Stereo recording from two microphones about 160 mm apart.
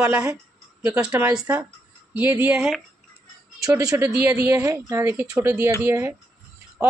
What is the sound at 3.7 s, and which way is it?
A woman's voice, 20° right (ahead or behind).